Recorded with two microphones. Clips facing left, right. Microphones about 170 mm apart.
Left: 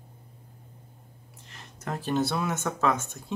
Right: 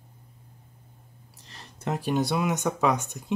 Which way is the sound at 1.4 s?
35° right (ahead or behind).